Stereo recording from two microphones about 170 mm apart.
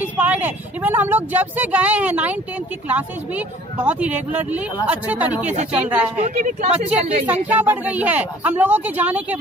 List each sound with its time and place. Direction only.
0.0 s a woman's voice: 10° right (ahead or behind)
6.2 s speech: 45° right (ahead or behind)
7.2 s a woman's voice: 10° right (ahead or behind)